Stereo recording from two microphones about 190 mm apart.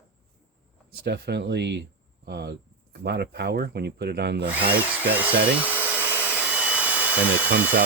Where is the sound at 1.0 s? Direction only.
60° right (ahead or behind).